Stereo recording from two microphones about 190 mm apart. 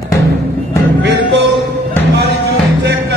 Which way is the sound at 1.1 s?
70° right (ahead or behind).